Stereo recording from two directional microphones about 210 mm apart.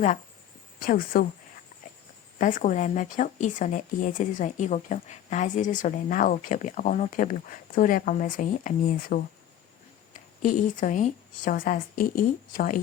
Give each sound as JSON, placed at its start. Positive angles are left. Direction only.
{"t": 0.8, "sound": "speech", "side_deg": 40}
{"t": 2.4, "sound": "speech", "side_deg": 35}
{"t": 10.4, "sound": "speech", "side_deg": 40}